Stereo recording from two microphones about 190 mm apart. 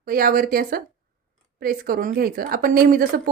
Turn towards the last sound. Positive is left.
turn(degrees=-50)  # may be behind; listen again after turning